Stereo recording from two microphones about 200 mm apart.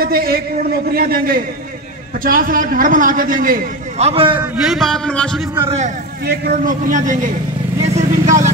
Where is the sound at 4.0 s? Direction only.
25° right (ahead or behind).